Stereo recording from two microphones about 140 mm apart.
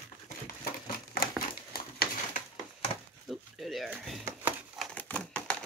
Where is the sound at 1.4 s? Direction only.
85° left.